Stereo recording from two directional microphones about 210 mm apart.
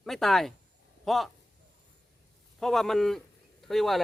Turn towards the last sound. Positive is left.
turn(degrees=0)  # may be behind; listen again after turning